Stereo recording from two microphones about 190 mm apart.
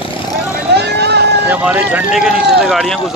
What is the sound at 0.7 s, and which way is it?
Vehicle, 60° right (ahead or behind).